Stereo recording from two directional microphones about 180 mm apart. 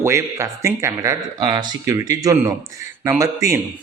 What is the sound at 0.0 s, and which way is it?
Speech, 15° right (ahead or behind).